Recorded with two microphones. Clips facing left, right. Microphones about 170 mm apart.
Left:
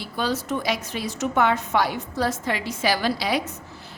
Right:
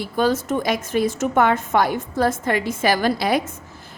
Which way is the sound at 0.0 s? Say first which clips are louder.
Right 6 dB; 50° right (ahead or behind).